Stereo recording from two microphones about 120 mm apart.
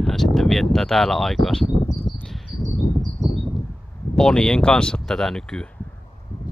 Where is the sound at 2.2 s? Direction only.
5° left (ahead or behind).